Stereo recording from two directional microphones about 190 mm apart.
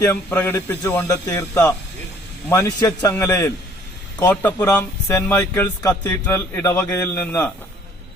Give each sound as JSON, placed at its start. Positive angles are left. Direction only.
{"t": 0.0, "sound": "a man's voice", "side_deg": 10}